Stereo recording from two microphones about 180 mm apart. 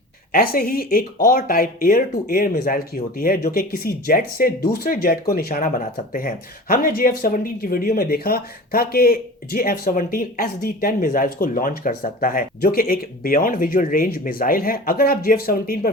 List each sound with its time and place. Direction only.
0.3 s speech: 55° left (ahead or behind)